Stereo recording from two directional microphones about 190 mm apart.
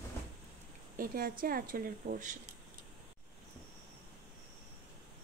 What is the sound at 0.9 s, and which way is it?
Speech, 50° right (ahead or behind).